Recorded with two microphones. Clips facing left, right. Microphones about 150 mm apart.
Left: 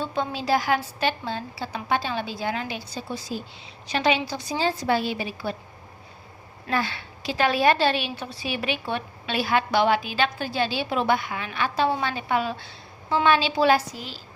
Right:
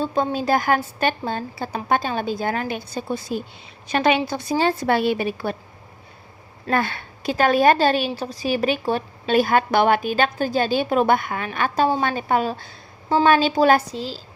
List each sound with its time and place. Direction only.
0.0 s a woman's voice: 40° right (ahead or behind)
6.7 s a woman's voice: 50° right (ahead or behind)